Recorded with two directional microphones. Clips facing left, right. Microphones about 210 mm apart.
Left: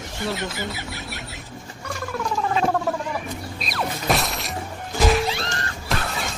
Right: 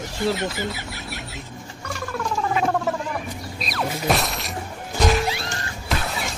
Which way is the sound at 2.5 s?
Centre (ahead or behind).